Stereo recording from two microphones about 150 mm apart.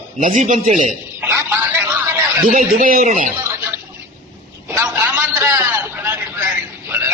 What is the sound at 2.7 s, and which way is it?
Speech, 70° right (ahead or behind).